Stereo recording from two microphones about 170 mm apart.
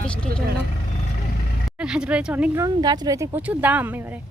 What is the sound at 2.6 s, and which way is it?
Speech, 25° right (ahead or behind).